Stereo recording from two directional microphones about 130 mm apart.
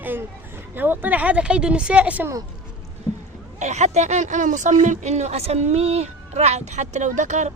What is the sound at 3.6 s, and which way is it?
Speech, 60° right (ahead or behind).